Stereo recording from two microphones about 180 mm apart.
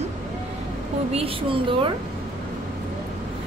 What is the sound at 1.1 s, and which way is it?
Speech, 30° right (ahead or behind).